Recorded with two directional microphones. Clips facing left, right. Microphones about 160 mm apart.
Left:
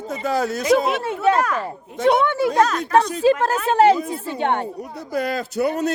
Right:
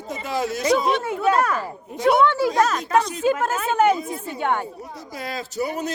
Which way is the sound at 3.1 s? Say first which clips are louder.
Left 4 dB; 35° left (ahead or behind).